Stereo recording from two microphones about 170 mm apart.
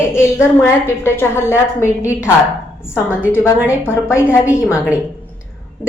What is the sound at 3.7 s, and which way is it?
Speech, 15° left (ahead or behind).